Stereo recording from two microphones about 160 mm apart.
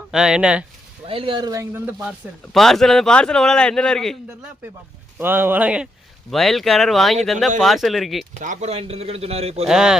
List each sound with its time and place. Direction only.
0.1 s a man's voice: 5° right (ahead or behind)
1.0 s a man's voice: 35° right (ahead or behind)
2.0 s a man's voice: centre (ahead or behind)
5.1 s a man's voice: 15° right (ahead or behind)
8.4 s a man's voice: 45° right (ahead or behind)
9.6 s a man's voice: 5° right (ahead or behind)